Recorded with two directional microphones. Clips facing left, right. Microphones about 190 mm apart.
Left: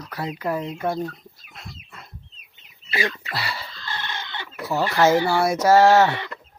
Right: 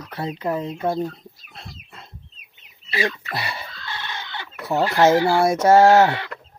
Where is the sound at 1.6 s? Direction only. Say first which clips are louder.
Even; 30° right (ahead or behind).